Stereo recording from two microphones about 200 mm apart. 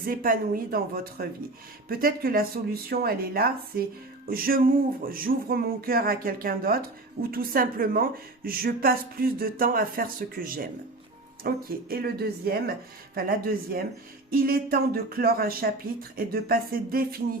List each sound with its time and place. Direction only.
0.0 s speech: 45° right (ahead or behind)